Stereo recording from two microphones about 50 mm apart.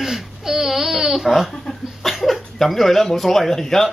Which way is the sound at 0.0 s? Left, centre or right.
Centre.